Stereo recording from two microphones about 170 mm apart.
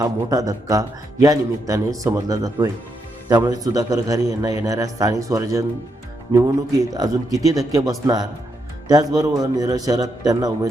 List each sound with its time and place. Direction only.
0.0 s speech: 20° right (ahead or behind)